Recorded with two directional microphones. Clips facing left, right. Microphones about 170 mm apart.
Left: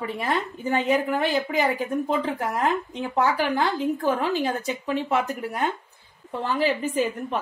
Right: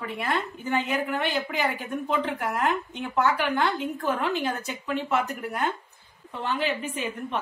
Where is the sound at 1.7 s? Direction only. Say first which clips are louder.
Left 3 dB; 40° left (ahead or behind).